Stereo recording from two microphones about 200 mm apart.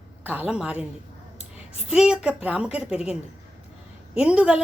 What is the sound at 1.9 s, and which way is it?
A woman's voice, 5° right (ahead or behind).